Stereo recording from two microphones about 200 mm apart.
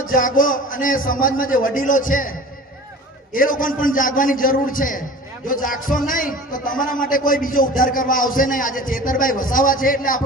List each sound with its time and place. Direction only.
0.1 s a man's voice: 45° left (ahead or behind)
3.3 s a man's voice: 45° left (ahead or behind)